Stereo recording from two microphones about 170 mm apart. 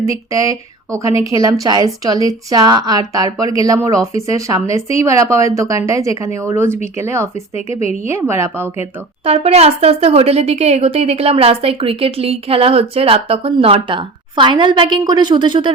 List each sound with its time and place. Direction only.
0.0 s a woman's voice: 20° right (ahead or behind)
7.7 s a woman's voice: 40° left (ahead or behind)
8.0 s a woman's voice: 15° right (ahead or behind)
9.2 s speech: 35° right (ahead or behind)